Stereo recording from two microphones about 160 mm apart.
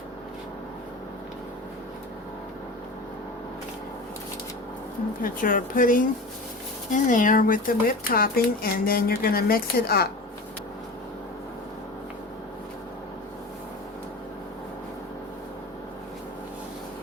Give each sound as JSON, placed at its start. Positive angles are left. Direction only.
{"t": 5.2, "sound": "speech", "side_deg": 60}